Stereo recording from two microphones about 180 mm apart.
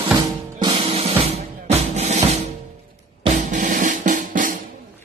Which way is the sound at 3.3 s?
50° right (ahead or behind).